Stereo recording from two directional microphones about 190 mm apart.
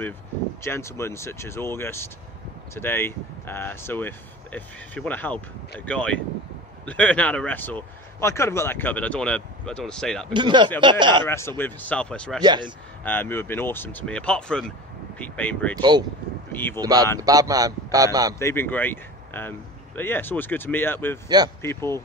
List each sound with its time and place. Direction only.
0.6 s speech: 15° left (ahead or behind)
10.3 s a man's voice: 25° right (ahead or behind)
11.2 s speech: 15° left (ahead or behind)
12.4 s a man's voice: 25° right (ahead or behind)
13.0 s speech: 10° left (ahead or behind)
15.8 s a man's voice: 25° right (ahead or behind)
16.5 s speech: 10° left (ahead or behind)
16.8 s a man's voice: 20° right (ahead or behind)
18.4 s speech: 10° left (ahead or behind)